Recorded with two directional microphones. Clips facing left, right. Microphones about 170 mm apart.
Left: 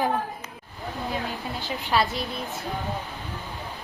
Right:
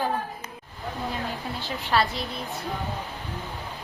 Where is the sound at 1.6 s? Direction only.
Centre (ahead or behind).